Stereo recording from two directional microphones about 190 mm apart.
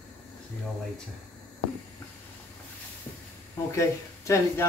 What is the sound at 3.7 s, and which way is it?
Speech, 15° left (ahead or behind).